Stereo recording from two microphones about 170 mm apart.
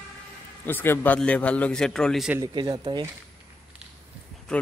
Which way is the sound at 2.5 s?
25° right (ahead or behind).